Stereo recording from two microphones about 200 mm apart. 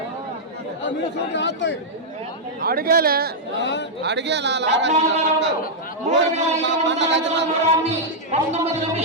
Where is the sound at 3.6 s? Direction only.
60° left (ahead or behind).